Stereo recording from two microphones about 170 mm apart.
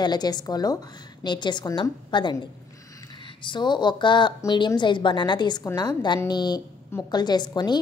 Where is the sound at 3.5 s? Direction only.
25° left (ahead or behind).